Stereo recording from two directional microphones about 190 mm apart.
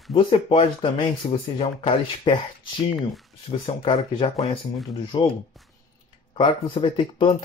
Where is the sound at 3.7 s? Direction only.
30° left (ahead or behind).